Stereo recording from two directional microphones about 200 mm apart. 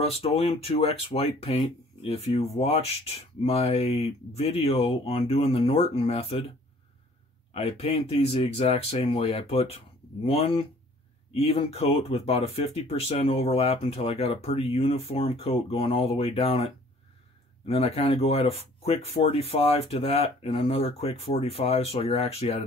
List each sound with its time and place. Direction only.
0.0 s speech: 30° left (ahead or behind)
7.5 s speech: 30° left (ahead or behind)